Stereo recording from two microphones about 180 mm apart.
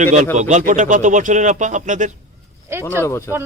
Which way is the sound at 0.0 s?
40° right (ahead or behind).